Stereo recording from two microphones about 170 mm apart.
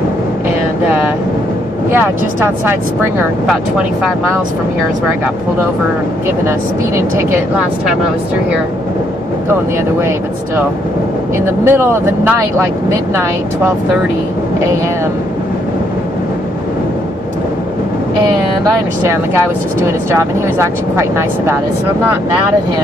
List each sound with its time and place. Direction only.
1.9 s speech: 15° right (ahead or behind)
3.4 s speech: centre (ahead or behind)
7.2 s speech: 15° right (ahead or behind)
11.4 s speech: 15° right (ahead or behind)
19.8 s speech: 15° right (ahead or behind)